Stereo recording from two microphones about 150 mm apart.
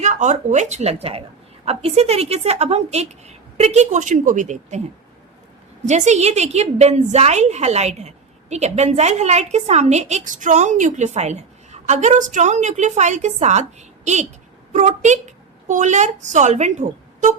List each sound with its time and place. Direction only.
0.0 s a woman's voice: 55° right (ahead or behind)
5.8 s a woman's voice: 50° right (ahead or behind)